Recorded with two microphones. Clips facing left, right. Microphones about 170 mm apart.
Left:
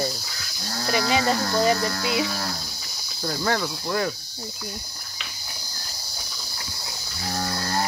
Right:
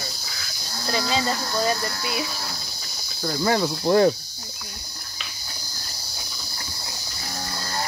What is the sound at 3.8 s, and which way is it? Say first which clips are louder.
Cricket: right 12 dB; 30° right (ahead or behind).